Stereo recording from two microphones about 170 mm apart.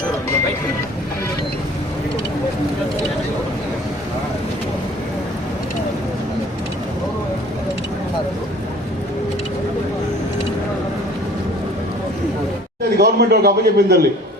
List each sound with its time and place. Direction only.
13.0 s a man's voice: 70° right (ahead or behind)